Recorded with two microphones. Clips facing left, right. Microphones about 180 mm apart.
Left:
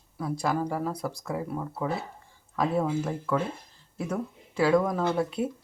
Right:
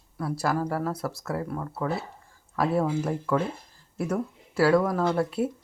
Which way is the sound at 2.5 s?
5° right (ahead or behind).